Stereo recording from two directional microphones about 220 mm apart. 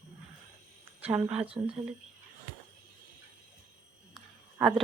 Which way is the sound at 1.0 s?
5° right (ahead or behind).